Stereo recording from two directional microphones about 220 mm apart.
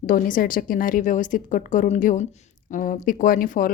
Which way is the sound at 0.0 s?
40° left (ahead or behind).